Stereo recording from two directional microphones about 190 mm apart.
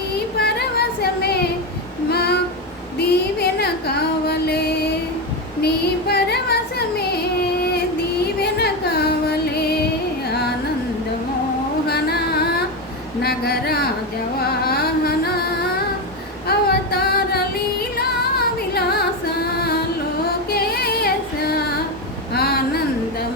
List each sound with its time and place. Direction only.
0.3 s child singing: 60° left (ahead or behind)
3.0 s music: 55° left (ahead or behind)
5.6 s female singing: 60° left (ahead or behind)
8.4 s music: 55° left (ahead or behind)
11.9 s a sound: 55° left (ahead or behind)
13.2 s a sound: 55° left (ahead or behind)
16.5 s female singing: 55° left (ahead or behind)
20.5 s female singing: 55° left (ahead or behind)
22.3 s a sound: 55° left (ahead or behind)